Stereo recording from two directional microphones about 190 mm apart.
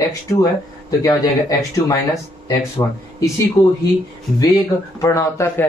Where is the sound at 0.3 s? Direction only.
15° left (ahead or behind).